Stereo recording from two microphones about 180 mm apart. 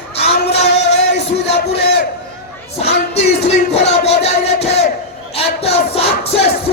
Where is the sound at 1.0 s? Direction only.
70° left (ahead or behind).